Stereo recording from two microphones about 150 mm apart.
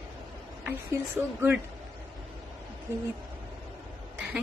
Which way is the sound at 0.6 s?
15° right (ahead or behind).